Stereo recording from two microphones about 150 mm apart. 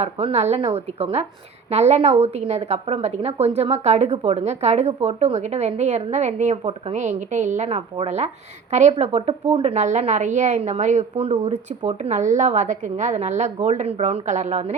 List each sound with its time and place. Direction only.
0.0 s a woman's voice: 45° right (ahead or behind)